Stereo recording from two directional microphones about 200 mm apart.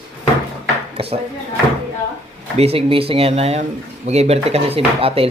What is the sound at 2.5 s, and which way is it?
Speech, 30° right (ahead or behind).